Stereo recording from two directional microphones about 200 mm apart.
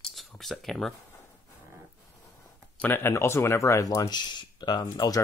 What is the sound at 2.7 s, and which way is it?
Speech, 10° left (ahead or behind).